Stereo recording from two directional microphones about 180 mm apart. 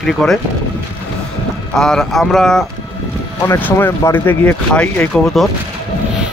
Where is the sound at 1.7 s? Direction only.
5° left (ahead or behind).